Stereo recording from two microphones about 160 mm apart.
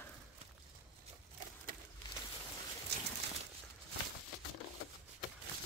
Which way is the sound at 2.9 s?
90° right.